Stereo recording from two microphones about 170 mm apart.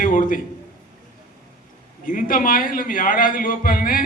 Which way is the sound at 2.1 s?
55° left (ahead or behind).